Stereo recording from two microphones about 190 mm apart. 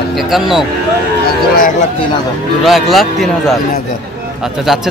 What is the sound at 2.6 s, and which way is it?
Speech, centre (ahead or behind).